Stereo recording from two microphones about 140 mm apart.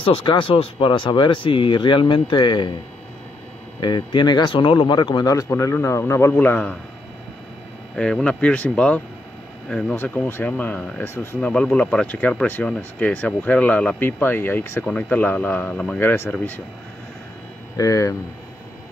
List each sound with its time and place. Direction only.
0.0 s speech: 35° left (ahead or behind)
3.8 s speech: 30° left (ahead or behind); by 6.8 s 10° left (ahead or behind)
7.9 s speech: 5° left (ahead or behind)
17.7 s speech: 20° left (ahead or behind)